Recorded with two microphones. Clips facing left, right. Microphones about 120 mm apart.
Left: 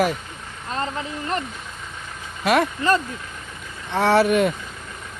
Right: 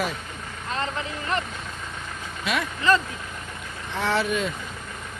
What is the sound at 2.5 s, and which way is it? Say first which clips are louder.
Speech: left 4 dB; 50° left (ahead or behind).